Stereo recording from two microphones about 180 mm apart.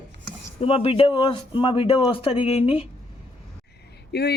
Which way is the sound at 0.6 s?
35° left (ahead or behind).